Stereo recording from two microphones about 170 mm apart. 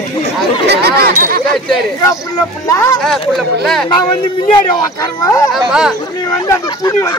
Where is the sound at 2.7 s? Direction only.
20° left (ahead or behind).